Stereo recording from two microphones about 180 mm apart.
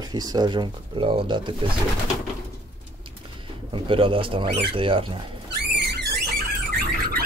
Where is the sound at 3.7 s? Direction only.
30° right (ahead or behind).